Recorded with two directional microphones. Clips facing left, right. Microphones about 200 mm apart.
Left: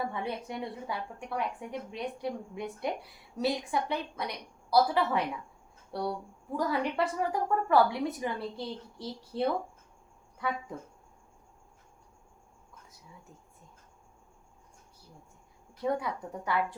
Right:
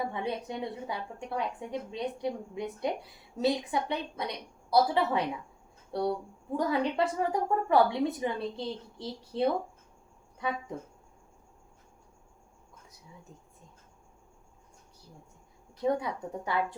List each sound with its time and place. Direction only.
0.0 s a woman's voice: 20° right (ahead or behind)
15.8 s a woman's voice: 20° right (ahead or behind)